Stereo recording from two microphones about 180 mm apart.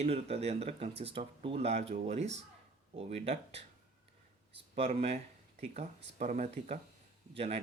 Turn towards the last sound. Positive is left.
turn(degrees=-35)  # may be behind; listen again after turning